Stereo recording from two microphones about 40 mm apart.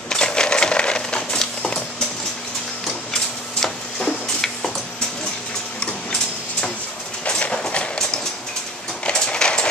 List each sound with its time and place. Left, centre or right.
0.1 s typewriter: centre
7.2 s clip-clop: left
7.7 s train: left
9.1 s a sound: centre